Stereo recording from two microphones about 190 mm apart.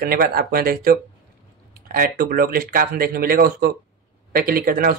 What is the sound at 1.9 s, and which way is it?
A man's voice, 50° right (ahead or behind).